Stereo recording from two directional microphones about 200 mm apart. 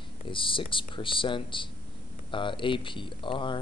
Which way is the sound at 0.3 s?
25° left (ahead or behind).